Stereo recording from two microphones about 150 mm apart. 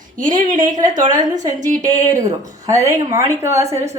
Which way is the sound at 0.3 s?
60° right (ahead or behind).